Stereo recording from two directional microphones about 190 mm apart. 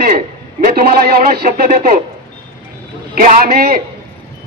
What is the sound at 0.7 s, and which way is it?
Speech, 50° right (ahead or behind).